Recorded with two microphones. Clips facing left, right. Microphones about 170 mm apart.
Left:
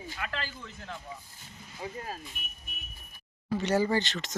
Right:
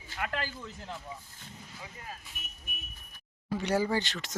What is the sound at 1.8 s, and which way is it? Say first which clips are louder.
Speech: left 9 dB; 35° left (ahead or behind).